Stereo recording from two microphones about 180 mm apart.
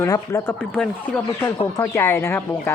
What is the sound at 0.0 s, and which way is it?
Speech, 15° left (ahead or behind).